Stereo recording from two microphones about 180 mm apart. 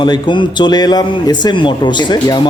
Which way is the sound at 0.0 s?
25° left (ahead or behind).